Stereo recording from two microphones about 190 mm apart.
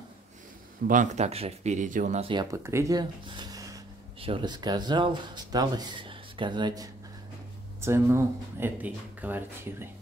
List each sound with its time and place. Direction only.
0.8 s speech: 40° right (ahead or behind)
2.2 s speech: 20° right (ahead or behind)